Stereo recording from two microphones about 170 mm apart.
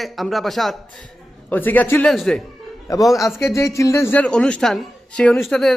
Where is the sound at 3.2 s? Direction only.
15° left (ahead or behind).